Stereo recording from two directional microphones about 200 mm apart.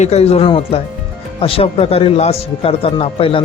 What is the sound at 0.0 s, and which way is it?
Speech, 30° left (ahead or behind).